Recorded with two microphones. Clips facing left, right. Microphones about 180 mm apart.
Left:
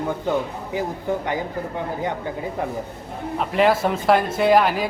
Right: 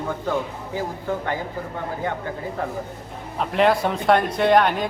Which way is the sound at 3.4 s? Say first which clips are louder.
Even; centre (ahead or behind).